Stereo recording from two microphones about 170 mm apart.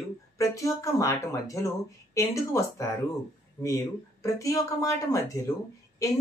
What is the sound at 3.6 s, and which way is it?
A woman's voice, 20° left (ahead or behind).